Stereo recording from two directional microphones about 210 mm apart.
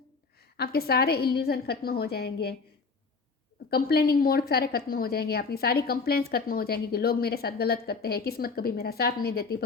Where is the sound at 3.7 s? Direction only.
45° left (ahead or behind).